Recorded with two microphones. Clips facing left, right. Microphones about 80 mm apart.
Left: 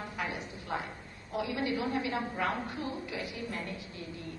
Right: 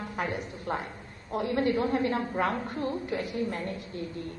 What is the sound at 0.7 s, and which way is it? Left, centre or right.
A man's voice, right.